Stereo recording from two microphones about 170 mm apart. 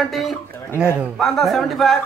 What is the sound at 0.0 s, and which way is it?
A man's voice, centre (ahead or behind).